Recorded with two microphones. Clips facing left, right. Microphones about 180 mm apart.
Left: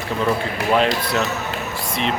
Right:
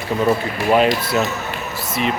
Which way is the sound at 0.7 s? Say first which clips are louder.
Right 3 dB; 10° right (ahead or behind).